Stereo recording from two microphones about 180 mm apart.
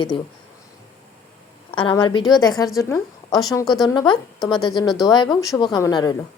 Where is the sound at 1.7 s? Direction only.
25° left (ahead or behind).